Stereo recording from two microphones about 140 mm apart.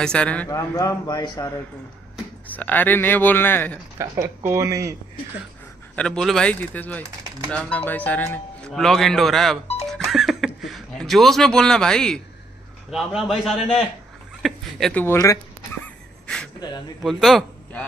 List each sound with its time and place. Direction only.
0.0 s speech: 5° left (ahead or behind)
0.5 s a man's voice: 25° left (ahead or behind)
2.4 s speech: 10° left (ahead or behind)
4.0 s speech: 20° right (ahead or behind)
5.9 s speech: 5° left (ahead or behind)
9.8 s a sound: centre (ahead or behind)
12.9 s speech: centre (ahead or behind)
14.4 s a sound: 5° left (ahead or behind)
15.0 s speech: 25° left (ahead or behind)
15.8 s wheeze: 5° left (ahead or behind)
17.0 s speech: centre (ahead or behind)